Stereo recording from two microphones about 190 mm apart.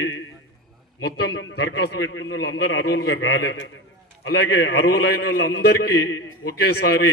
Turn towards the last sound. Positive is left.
turn(degrees=60)  # may be behind; listen again after turning